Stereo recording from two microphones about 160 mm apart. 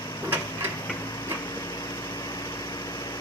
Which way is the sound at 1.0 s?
25° left (ahead or behind).